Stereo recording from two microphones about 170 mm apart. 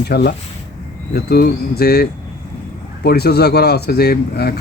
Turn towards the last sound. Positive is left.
turn(degrees=70)  # may be behind; listen again after turning